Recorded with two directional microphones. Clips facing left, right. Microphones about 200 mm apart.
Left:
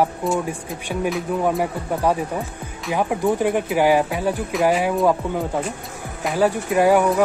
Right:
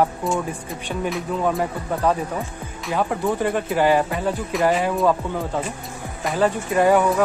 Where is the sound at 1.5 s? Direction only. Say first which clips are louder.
Left 1 dB; 10° left (ahead or behind).